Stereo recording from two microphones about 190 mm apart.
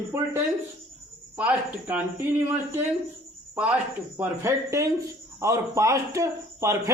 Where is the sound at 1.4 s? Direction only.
5° right (ahead or behind).